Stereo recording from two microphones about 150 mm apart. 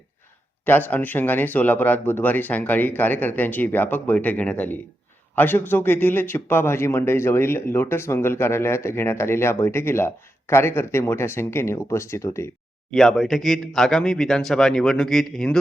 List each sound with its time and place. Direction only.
0.6 s a man's voice: 10° left (ahead or behind)
12.9 s a man's voice: centre (ahead or behind)